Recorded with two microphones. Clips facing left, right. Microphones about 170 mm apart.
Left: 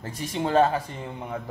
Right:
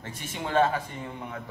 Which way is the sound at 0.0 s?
35° left (ahead or behind).